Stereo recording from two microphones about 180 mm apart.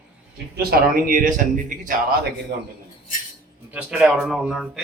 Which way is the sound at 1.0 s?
50° right (ahead or behind).